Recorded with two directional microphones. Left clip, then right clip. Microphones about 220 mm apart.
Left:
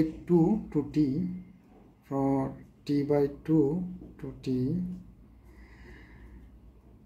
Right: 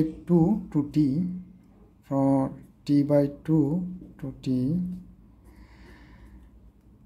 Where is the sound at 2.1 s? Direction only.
35° right (ahead or behind).